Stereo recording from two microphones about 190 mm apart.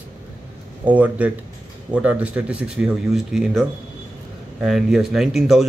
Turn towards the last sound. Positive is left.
turn(degrees=0)  # may be behind; listen again after turning